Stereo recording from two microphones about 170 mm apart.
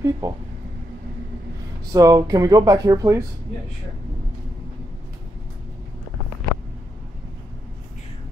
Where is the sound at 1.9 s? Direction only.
20° right (ahead or behind).